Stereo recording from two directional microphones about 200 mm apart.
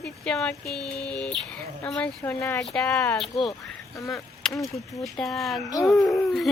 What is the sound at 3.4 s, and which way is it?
Speech, 25° left (ahead or behind).